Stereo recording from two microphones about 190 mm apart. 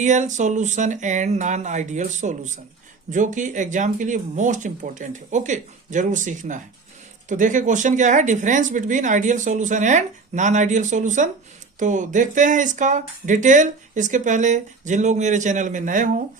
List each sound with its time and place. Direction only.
0.0 s speech: 40° right (ahead or behind)